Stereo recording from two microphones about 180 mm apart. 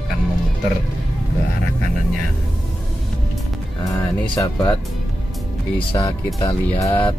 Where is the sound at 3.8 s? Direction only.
20° left (ahead or behind).